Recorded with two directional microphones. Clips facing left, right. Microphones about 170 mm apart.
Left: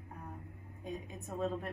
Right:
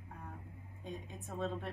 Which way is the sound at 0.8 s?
5° left (ahead or behind).